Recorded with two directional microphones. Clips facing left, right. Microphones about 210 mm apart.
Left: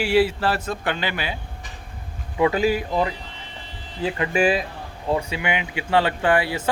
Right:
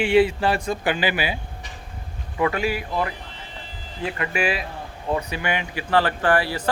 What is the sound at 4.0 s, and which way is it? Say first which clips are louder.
Speech: left 3 dB; 25° left (ahead or behind).